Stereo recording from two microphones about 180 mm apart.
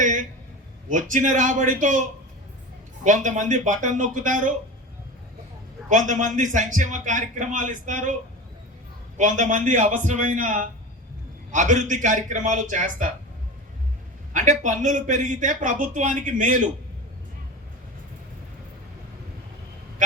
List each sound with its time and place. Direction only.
0.0 s a sound: 45° right (ahead or behind)
0.9 s speech: 45° right (ahead or behind)
5.9 s speech: 45° right (ahead or behind)
9.1 s speech: 45° right (ahead or behind)
14.3 s speech: 45° right (ahead or behind)